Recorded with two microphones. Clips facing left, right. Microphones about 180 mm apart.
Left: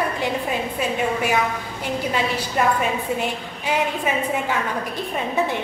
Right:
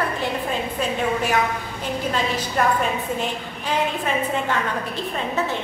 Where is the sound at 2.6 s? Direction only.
10° left (ahead or behind).